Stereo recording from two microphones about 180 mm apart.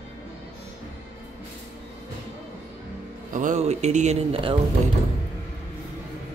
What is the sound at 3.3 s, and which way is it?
Speech, 40° right (ahead or behind).